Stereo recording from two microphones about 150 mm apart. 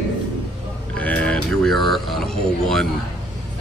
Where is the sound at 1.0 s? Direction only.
10° left (ahead or behind).